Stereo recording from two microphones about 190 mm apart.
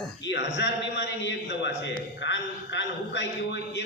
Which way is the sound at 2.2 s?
70° left (ahead or behind).